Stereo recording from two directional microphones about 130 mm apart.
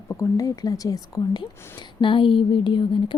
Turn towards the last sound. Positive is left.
turn(degrees=40)  # may be behind; listen again after turning